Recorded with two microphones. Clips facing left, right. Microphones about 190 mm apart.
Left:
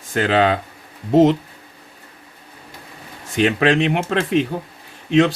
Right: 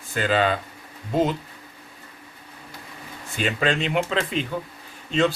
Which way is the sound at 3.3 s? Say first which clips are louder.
Left 8 dB; 80° left.